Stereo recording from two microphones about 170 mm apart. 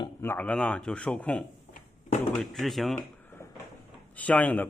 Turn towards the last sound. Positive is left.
turn(degrees=10)  # may be behind; listen again after turning